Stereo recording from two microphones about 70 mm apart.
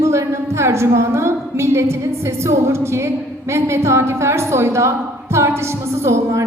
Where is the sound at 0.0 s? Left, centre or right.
Right.